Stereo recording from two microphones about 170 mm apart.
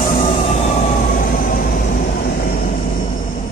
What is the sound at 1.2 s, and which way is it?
Vehicle, 55° left (ahead or behind).